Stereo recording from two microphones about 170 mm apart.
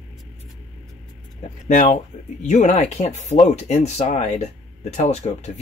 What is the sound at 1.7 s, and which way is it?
Speech, 45° left (ahead or behind).